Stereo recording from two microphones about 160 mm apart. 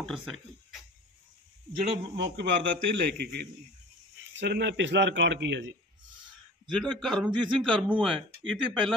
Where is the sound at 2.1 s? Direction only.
90° right.